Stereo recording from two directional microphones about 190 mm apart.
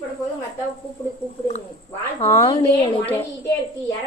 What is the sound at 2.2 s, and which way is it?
Speech, 15° left (ahead or behind).